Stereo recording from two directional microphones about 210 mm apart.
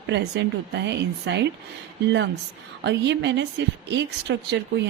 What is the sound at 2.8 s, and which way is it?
Speech, 55° right (ahead or behind).